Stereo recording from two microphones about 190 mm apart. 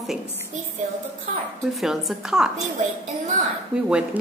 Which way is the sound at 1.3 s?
40° right (ahead or behind).